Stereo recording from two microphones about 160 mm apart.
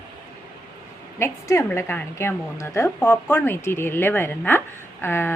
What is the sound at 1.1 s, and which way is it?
A woman's voice, 15° left (ahead or behind).